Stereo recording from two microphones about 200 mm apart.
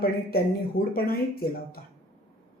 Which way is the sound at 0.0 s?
50° left (ahead or behind).